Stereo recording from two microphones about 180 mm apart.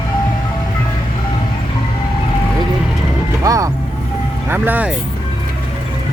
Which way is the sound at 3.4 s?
20° right (ahead or behind).